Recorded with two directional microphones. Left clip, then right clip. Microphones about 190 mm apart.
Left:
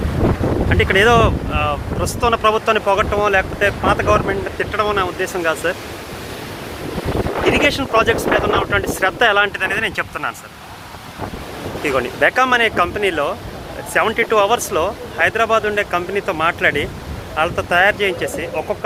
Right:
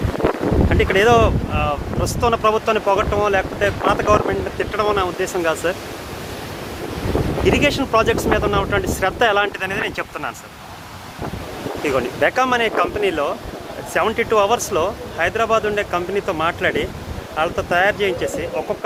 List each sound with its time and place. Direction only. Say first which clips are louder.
0.7 s speech: left 2 dB; 10° right (ahead or behind)
7.5 s speech: left 1 dB; 20° right (ahead or behind)
11.8 s speech: left 2 dB; 10° right (ahead or behind)